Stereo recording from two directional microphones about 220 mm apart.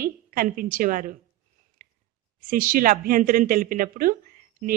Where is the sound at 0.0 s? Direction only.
40° right (ahead or behind).